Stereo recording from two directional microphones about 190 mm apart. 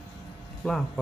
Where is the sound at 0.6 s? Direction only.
5° left (ahead or behind).